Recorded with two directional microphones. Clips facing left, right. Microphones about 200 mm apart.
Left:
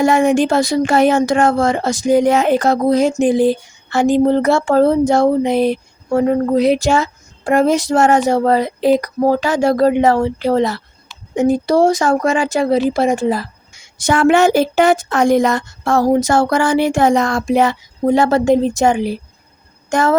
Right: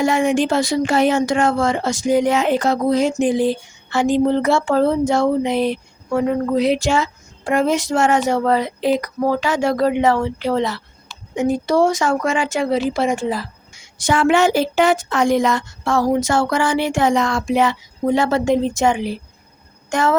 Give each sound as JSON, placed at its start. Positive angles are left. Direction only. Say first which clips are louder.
{"t": 0.0, "sound": "a woman's voice", "louder": "left 4 dB", "side_deg": 45}
{"t": 19.9, "sound": "music", "louder": "left 3 dB", "side_deg": 40}